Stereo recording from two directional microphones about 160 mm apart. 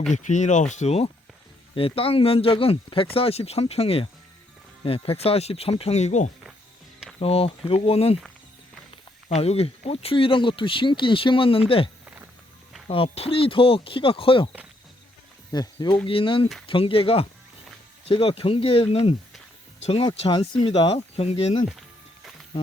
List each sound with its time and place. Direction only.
0.1 s speech: 50° left (ahead or behind)
9.3 s speech: 40° left (ahead or behind)
12.9 s speech: 35° left (ahead or behind)
15.5 s speech: 25° left (ahead or behind)